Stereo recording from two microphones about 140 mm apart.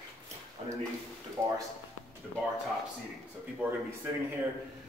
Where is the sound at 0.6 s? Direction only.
50° right (ahead or behind).